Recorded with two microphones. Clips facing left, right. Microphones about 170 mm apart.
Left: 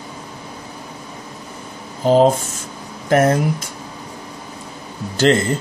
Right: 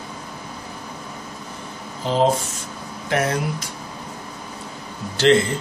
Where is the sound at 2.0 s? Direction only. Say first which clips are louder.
Left 6 dB; 45° left (ahead or behind).